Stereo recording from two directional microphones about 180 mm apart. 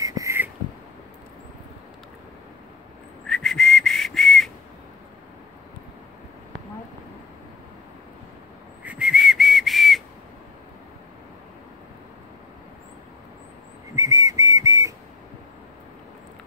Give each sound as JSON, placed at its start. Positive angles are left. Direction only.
{"t": 0.0, "sound": "beatboxing", "side_deg": -20}
{"t": 3.3, "sound": "whistle", "side_deg": 0}
{"t": 8.8, "sound": "whistle", "side_deg": -5}
{"t": 13.9, "sound": "whistle", "side_deg": -20}